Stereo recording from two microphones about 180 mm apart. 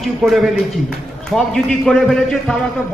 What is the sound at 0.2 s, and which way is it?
Speech, centre (ahead or behind).